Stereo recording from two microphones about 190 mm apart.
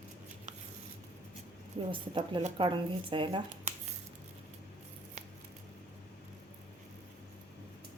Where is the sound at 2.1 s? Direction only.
25° right (ahead or behind).